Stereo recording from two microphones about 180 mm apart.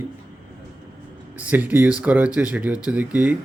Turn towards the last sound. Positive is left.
turn(degrees=-10)  # may be behind; listen again after turning